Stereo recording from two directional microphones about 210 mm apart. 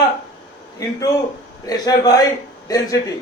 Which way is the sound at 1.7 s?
15° left (ahead or behind).